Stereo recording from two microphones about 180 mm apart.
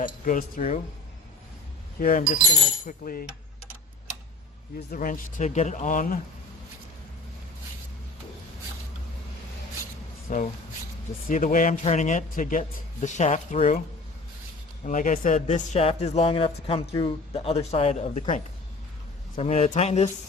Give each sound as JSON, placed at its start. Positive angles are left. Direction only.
{"t": 0.0, "sound": "a man's voice", "side_deg": 50}
{"t": 2.0, "sound": "a man's voice", "side_deg": 45}
{"t": 4.9, "sound": "a man's voice", "side_deg": 50}
{"t": 10.2, "sound": "a man's voice", "side_deg": 45}
{"t": 14.8, "sound": "a man's voice", "side_deg": 45}